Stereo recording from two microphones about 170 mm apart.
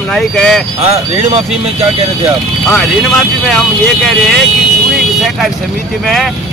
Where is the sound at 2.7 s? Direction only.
Centre (ahead or behind).